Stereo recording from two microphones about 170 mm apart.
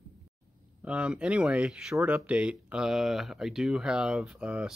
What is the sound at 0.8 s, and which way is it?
Speech, 5° right (ahead or behind).